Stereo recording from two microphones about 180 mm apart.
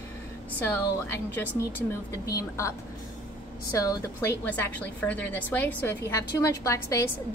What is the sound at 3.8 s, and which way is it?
A woman's voice, 15° left (ahead or behind).